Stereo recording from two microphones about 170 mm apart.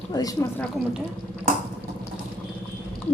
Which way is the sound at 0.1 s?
20° left (ahead or behind).